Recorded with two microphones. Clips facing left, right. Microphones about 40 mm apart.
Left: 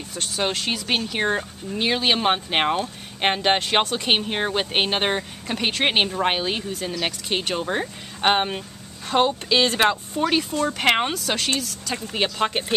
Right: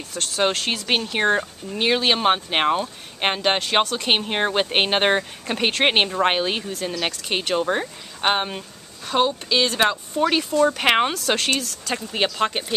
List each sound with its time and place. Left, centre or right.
0.1 s speech: centre
0.8 s speech: centre
4.0 s speech: centre
6.7 s speech: centre
10.8 s speech: centre